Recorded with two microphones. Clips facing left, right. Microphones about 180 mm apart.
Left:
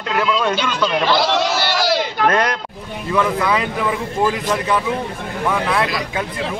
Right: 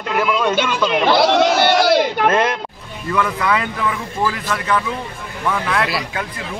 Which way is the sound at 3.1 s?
10° left (ahead or behind).